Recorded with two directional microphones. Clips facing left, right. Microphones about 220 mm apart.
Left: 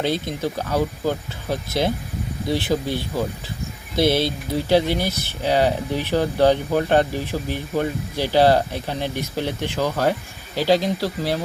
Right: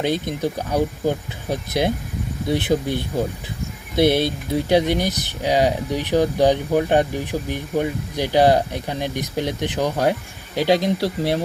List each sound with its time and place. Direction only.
0.0 s speech: 20° right (ahead or behind)